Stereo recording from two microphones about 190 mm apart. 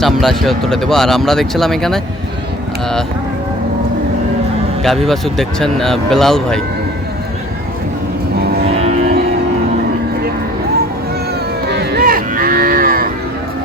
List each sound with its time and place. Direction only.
0.0 s speech: centre (ahead or behind)
4.8 s speech: centre (ahead or behind)
8.8 s music: 35° right (ahead or behind)
11.7 s livestock: 60° right (ahead or behind)